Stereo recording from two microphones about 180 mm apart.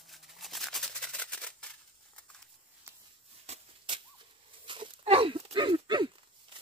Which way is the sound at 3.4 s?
30° right (ahead or behind).